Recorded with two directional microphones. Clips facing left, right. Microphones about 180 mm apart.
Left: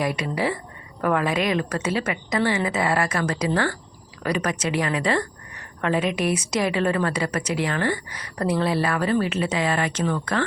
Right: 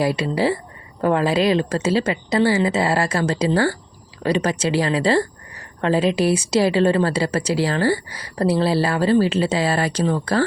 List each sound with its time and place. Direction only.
0.0 s a woman's voice: 30° right (ahead or behind)